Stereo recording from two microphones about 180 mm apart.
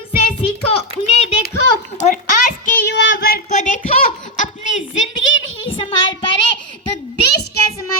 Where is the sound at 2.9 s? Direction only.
80° left; by 3.8 s 45° left (ahead or behind).